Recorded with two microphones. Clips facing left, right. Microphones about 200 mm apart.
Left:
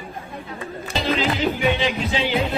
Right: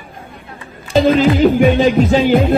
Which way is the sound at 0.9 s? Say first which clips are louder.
Right 12 dB; 50° right (ahead or behind).